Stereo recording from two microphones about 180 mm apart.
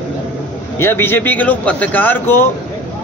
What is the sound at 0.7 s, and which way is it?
A man's voice, 15° left (ahead or behind).